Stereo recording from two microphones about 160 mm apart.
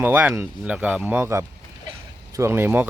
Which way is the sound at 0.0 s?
10° right (ahead or behind).